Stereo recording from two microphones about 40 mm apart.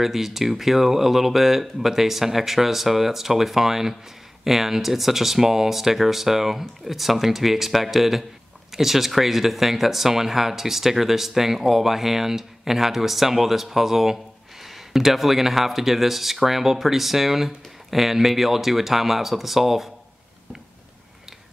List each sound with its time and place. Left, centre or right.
0.0 s speech: centre